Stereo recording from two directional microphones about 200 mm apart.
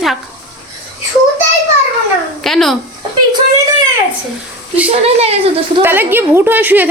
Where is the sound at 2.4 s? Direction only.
Centre (ahead or behind).